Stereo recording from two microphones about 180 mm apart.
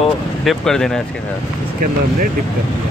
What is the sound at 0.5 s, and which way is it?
Speech, 5° left (ahead or behind).